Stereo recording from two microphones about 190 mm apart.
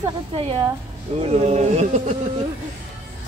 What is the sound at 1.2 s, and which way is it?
Speech, 35° right (ahead or behind).